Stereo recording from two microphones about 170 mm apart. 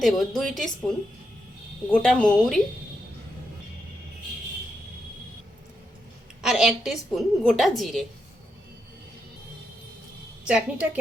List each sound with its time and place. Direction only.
0.0 s a woman's voice: centre (ahead or behind)
6.4 s a woman's voice: 5° right (ahead or behind)
10.4 s a woman's voice: 5° right (ahead or behind)